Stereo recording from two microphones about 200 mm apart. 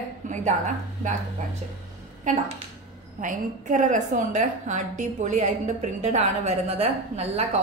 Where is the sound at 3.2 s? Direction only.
40° right (ahead or behind).